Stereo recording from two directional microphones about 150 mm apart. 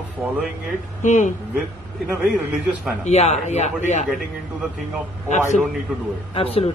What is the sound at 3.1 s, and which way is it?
Speech, 50° left (ahead or behind).